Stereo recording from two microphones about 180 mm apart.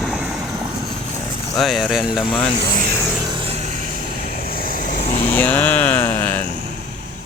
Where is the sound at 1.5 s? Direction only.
Centre (ahead or behind).